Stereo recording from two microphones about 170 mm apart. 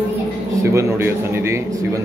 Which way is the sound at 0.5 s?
15° right (ahead or behind).